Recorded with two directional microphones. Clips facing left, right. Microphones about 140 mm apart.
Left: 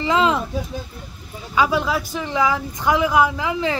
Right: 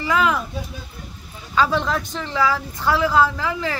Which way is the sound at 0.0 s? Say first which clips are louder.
Left 2 dB; 25° left (ahead or behind).